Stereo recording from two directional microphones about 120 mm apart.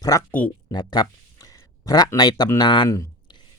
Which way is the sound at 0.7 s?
35° left (ahead or behind).